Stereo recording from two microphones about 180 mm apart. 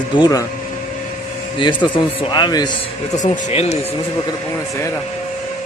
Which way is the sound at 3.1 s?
40° left (ahead or behind).